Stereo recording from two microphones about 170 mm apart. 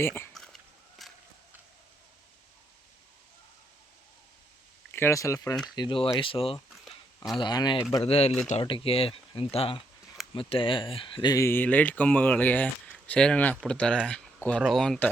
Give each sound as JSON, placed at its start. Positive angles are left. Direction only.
{"t": 0.0, "sound": "speech", "side_deg": 15}
{"t": 0.3, "sound": "biting", "side_deg": 0}
{"t": 4.9, "sound": "speech", "side_deg": 15}
{"t": 8.0, "sound": "speech", "side_deg": 35}